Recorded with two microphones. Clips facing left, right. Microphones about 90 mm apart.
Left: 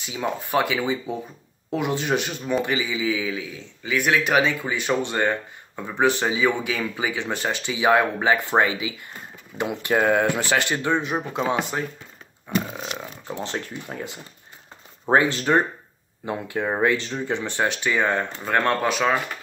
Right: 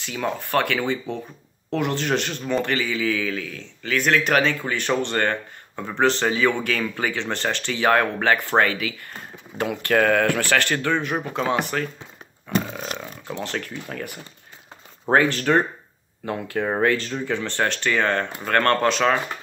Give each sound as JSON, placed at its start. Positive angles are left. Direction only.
{"t": 0.0, "sound": "a man's voice", "side_deg": 15}
{"t": 12.9, "sound": "a man's voice", "side_deg": 15}
{"t": 16.6, "sound": "a man's voice", "side_deg": 5}
{"t": 16.9, "sound": "a man's voice", "side_deg": 20}